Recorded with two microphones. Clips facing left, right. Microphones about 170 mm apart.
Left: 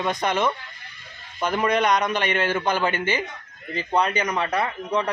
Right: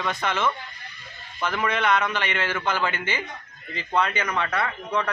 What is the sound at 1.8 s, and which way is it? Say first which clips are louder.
A man's voice: left 2 dB; 15° left (ahead or behind).